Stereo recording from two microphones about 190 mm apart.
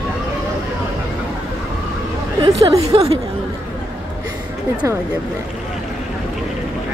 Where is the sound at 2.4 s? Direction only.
30° right (ahead or behind).